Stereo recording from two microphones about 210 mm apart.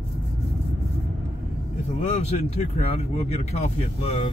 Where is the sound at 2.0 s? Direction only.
30° left (ahead or behind).